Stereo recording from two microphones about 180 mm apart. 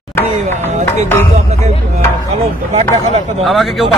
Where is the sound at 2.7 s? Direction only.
35° right (ahead or behind).